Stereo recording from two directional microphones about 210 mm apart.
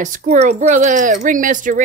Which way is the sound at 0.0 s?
40° right (ahead or behind).